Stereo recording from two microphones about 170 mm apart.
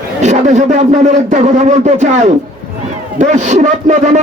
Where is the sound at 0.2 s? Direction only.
45° right (ahead or behind).